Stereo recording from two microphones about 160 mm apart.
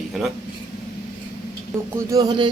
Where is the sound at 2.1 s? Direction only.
25° right (ahead or behind).